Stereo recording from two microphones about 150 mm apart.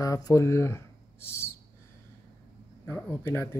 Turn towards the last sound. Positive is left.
turn(degrees=15)  # may be behind; listen again after turning